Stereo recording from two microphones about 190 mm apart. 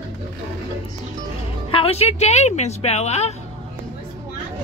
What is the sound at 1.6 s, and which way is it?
Speech, 30° left (ahead or behind).